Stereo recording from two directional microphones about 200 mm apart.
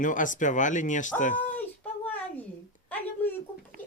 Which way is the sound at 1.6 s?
10° left (ahead or behind).